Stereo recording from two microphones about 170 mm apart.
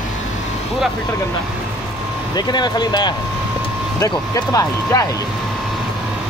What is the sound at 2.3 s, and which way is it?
Speech, 25° left (ahead or behind).